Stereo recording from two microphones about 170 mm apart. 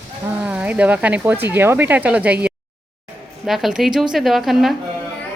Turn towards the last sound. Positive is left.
turn(degrees=0)  # may be behind; listen again after turning